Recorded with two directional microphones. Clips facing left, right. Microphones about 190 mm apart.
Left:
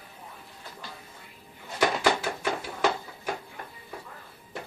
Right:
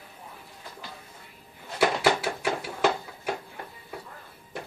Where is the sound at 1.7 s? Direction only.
10° right (ahead or behind).